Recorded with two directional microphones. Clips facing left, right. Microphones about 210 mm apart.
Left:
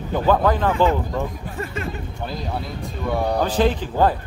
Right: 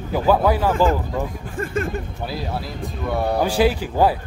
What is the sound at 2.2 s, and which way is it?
Speech, 5° right (ahead or behind).